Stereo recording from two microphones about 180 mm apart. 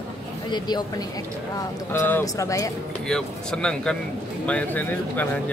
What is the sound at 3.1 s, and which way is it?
A man's voice, 5° left (ahead or behind).